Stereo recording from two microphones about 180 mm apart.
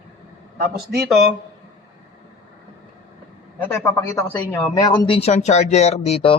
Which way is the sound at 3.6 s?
10° left (ahead or behind).